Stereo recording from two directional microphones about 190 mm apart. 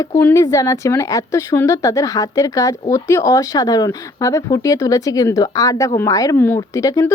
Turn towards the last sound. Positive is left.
turn(degrees=15)  # may be behind; listen again after turning